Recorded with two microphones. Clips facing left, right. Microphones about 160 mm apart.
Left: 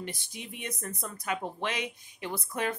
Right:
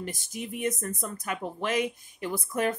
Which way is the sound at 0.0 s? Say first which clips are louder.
Right 4 dB; 45° right (ahead or behind).